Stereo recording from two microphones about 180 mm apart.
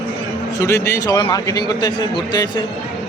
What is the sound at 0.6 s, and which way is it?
A man's voice, 15° left (ahead or behind).